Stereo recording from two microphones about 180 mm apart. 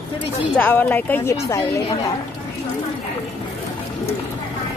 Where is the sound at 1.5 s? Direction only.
30° left (ahead or behind).